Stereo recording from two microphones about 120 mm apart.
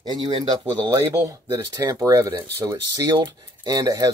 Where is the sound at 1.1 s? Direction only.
25° right (ahead or behind).